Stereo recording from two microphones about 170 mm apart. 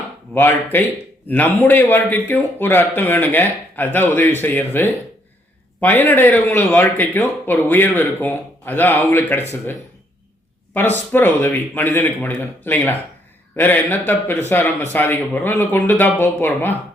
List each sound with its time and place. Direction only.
0.3 s speech: 10° left (ahead or behind)
10.8 s speech: 10° left (ahead or behind)